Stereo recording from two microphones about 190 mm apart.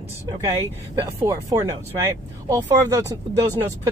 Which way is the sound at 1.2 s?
20° right (ahead or behind).